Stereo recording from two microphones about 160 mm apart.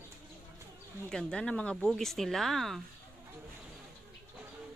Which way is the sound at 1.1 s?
5° left (ahead or behind).